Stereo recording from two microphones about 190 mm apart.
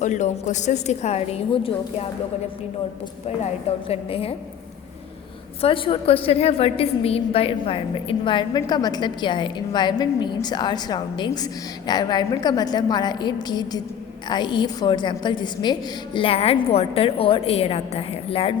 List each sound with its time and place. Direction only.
0.0 s a woman's voice: 40° left (ahead or behind)
3.8 s a woman's voice: 30° left (ahead or behind)
5.6 s a woman's voice: 30° left (ahead or behind)